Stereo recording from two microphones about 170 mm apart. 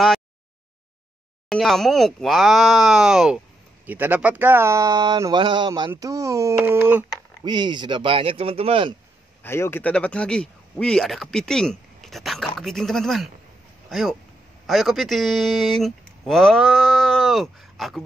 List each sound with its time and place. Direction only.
1.5 s speech: centre (ahead or behind)
7.4 s speech: 25° right (ahead or behind)
9.4 s speech: 15° left (ahead or behind)